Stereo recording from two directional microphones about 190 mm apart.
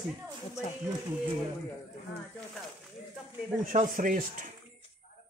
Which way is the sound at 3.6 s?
45° right (ahead or behind).